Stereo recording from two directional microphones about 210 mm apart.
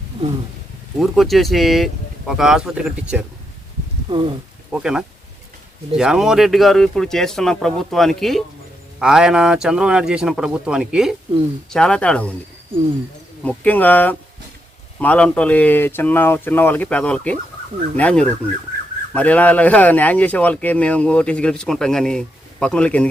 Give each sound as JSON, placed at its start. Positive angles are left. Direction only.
{"t": 0.9, "sound": "speech", "side_deg": 0}
{"t": 4.1, "sound": "speech", "side_deg": -25}
{"t": 4.7, "sound": "speech", "side_deg": -5}
{"t": 13.4, "sound": "speech", "side_deg": 5}